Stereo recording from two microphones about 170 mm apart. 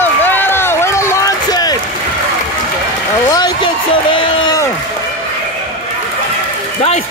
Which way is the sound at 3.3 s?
25° left (ahead or behind).